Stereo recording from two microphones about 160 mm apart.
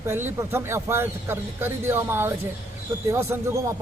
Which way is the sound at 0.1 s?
15° right (ahead or behind).